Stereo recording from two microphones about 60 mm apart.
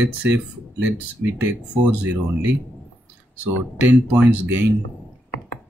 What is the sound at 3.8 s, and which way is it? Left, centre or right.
Speech, right.